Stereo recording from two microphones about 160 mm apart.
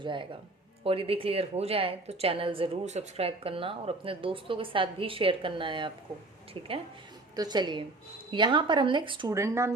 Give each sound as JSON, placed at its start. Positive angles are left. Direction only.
{"t": 0.0, "sound": "a woman's voice", "side_deg": -30}
{"t": 9.3, "sound": "speech", "side_deg": -20}